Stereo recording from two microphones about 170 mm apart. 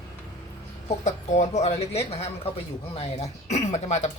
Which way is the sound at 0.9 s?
45° left (ahead or behind).